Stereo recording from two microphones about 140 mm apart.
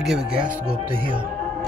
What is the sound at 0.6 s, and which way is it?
Speech, 40° right (ahead or behind).